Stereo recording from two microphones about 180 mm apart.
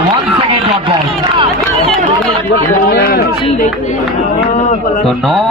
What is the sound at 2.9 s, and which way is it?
Speech, 60° left (ahead or behind).